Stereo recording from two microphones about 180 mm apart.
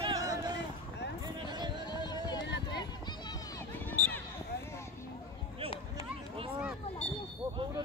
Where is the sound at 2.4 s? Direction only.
75° left (ahead or behind).